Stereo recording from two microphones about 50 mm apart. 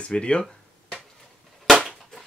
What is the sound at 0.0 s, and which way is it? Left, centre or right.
Speech, left.